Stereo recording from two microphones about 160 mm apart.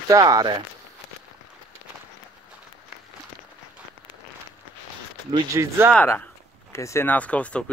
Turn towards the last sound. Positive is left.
turn(degrees=10)  # may be behind; listen again after turning